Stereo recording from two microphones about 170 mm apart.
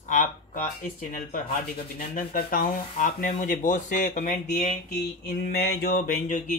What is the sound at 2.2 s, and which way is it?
Speech, 60° left (ahead or behind).